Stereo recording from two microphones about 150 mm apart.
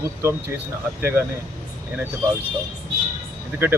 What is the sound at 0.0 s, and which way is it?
Speech, 20° right (ahead or behind).